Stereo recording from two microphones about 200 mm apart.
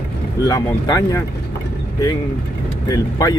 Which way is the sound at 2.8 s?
20° left (ahead or behind).